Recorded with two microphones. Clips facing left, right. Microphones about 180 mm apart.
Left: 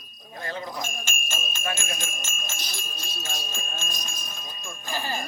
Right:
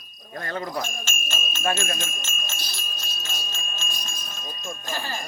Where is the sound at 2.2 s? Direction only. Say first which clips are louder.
Right 1 dB; 10° left (ahead or behind).